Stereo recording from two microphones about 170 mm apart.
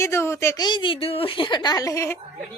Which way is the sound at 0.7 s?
30° left (ahead or behind).